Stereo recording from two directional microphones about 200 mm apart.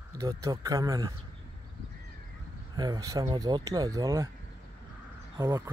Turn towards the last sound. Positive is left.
turn(degrees=-15)  # may be behind; listen again after turning